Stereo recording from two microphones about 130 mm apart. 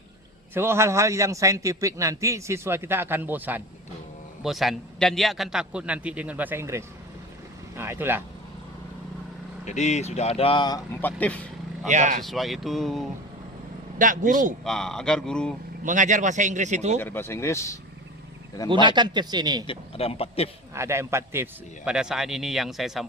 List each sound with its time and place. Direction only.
0.5 s a man's voice: 20° right (ahead or behind)
4.4 s a man's voice: centre (ahead or behind)
9.6 s speech: 60° left (ahead or behind); by 10.8 s 40° left (ahead or behind)
11.0 s speech: 10° left (ahead or behind)
11.9 s speech: 65° right (ahead or behind)
12.2 s speech: centre (ahead or behind)
14.0 s a man's voice: 90° right
14.6 s speech: 5° left (ahead or behind)
15.8 s speech: 80° right; by 17.0 s 60° right (ahead or behind)
17.0 s speech: 15° left (ahead or behind)
18.7 s speech: 35° right (ahead or behind)
19.6 s speech: 45° left (ahead or behind)
20.7 s a man's voice: 20° right (ahead or behind)
21.8 s speech: 5° right (ahead or behind)